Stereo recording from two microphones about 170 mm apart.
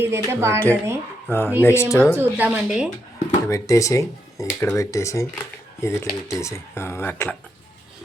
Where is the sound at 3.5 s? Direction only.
20° left (ahead or behind).